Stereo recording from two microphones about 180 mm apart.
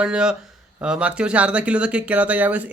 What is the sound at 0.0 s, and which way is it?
Speech, 5° right (ahead or behind).